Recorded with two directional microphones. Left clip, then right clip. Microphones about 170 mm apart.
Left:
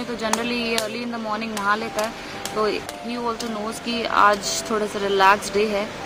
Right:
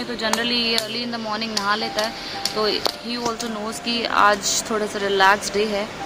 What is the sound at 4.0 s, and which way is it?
Speech, 5° right (ahead or behind).